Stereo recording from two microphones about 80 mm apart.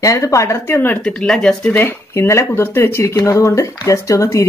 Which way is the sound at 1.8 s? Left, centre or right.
Left.